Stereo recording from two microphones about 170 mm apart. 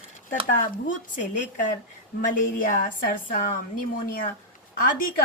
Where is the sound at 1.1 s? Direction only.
45° left (ahead or behind).